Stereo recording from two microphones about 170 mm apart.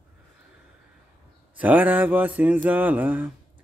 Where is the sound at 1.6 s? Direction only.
10° right (ahead or behind).